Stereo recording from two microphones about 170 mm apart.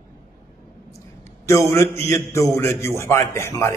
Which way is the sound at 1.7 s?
15° left (ahead or behind).